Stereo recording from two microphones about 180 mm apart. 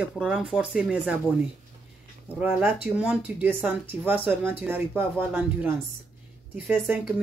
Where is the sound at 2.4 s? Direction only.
10° right (ahead or behind).